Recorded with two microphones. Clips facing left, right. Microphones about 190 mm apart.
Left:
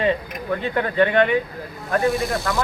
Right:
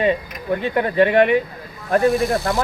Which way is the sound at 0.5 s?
20° right (ahead or behind).